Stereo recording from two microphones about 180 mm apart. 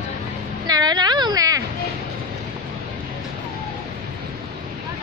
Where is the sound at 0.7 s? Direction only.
20° right (ahead or behind).